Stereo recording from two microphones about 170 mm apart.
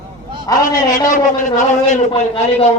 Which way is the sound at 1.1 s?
45° left (ahead or behind).